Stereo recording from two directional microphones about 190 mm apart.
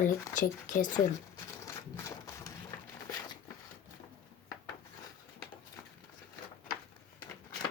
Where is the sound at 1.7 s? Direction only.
15° left (ahead or behind).